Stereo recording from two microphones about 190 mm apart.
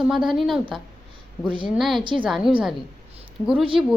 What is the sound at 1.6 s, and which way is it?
A woman's voice, centre (ahead or behind).